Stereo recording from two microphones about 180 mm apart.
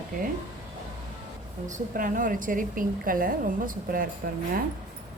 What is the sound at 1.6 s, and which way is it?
A woman's voice, 50° right (ahead or behind).